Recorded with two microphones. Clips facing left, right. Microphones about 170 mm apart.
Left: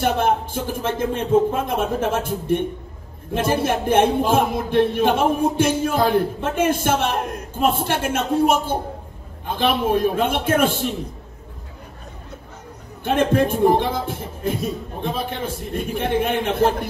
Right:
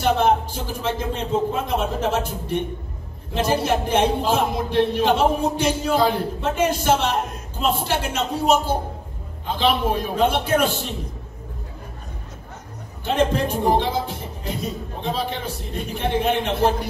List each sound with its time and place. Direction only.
0.0 s speech: 50° left (ahead or behind)
13.0 s speech: 50° left (ahead or behind)